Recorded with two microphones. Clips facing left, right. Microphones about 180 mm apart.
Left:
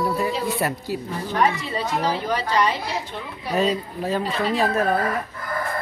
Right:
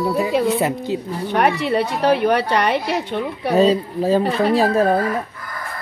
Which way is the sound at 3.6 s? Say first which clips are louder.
Right 7 dB; 30° right (ahead or behind).